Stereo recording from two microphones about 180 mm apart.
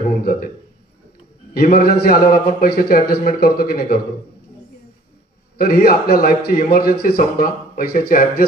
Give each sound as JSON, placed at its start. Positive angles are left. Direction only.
{"t": 0.2, "sound": "a sound", "side_deg": 55}
{"t": 1.5, "sound": "a man's voice", "side_deg": 55}
{"t": 5.6, "sound": "a man's voice", "side_deg": 60}